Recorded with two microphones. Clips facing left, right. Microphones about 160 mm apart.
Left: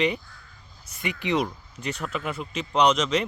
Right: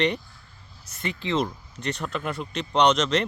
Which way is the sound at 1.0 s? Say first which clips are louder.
Left 1 dB; 15° left (ahead or behind).